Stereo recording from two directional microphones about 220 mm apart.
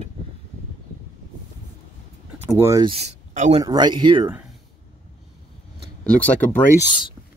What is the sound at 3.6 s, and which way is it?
Speech, 20° right (ahead or behind).